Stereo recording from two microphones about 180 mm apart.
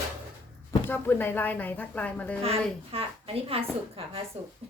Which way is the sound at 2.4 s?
30° right (ahead or behind).